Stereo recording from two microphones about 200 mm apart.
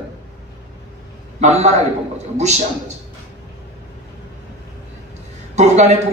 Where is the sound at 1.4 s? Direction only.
35° right (ahead or behind).